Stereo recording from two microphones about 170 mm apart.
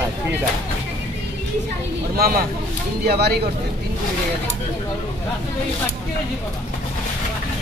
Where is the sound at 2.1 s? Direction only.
60° right (ahead or behind).